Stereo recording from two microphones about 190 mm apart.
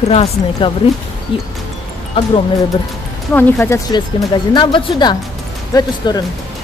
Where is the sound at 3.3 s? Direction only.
10° left (ahead or behind).